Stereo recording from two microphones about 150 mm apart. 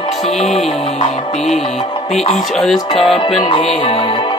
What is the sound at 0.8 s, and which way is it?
Music, 45° left (ahead or behind).